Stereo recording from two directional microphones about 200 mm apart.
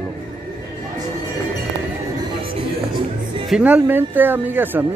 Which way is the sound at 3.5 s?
5° right (ahead or behind).